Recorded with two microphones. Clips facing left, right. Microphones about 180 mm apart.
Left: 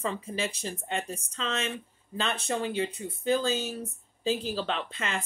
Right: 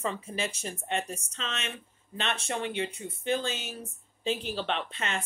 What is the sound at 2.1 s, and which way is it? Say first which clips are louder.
Speech: left 2 dB; 35° left (ahead or behind).